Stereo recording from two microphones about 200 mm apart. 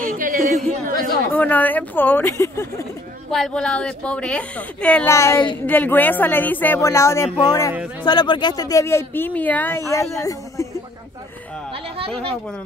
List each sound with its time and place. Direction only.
0.0 s a sound: 45° right (ahead or behind)
0.8 s chatter: 45° right (ahead or behind)
1.3 s speech: 10° left (ahead or behind)
3.3 s speech: centre (ahead or behind); by 5.6 s 20° left (ahead or behind)
5.7 s speech: 10° left (ahead or behind)